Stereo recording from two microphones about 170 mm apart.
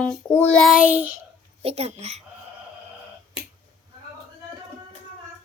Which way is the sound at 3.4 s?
35° left (ahead or behind).